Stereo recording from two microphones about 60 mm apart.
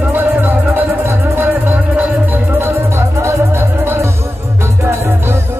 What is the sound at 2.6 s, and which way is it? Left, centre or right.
Music, right.